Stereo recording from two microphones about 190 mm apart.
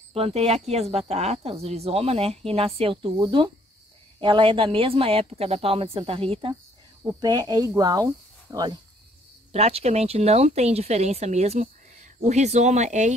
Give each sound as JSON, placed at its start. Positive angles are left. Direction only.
{"t": 0.1, "sound": "speech", "side_deg": -30}
{"t": 9.5, "sound": "speech", "side_deg": -30}